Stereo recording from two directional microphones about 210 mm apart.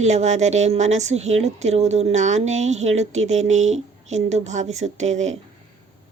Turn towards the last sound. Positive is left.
turn(degrees=-35)  # may be behind; listen again after turning